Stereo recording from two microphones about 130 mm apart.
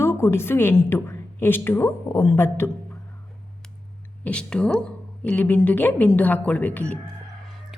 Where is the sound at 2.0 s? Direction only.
25° left (ahead or behind).